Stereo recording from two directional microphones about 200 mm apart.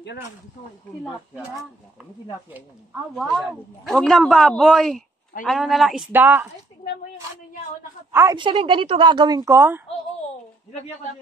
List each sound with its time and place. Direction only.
3.2 s a man's voice: centre (ahead or behind)
8.1 s a woman's voice: 15° right (ahead or behind)
8.4 s a woman's voice: 25° right (ahead or behind)